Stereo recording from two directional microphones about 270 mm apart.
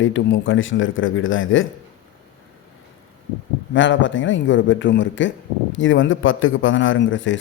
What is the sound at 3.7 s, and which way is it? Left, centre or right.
Speech, left.